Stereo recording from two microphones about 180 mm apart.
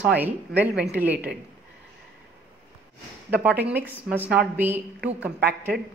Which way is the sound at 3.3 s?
5° right (ahead or behind).